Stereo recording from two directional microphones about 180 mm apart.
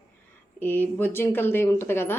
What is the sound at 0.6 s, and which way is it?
Speech, 10° left (ahead or behind).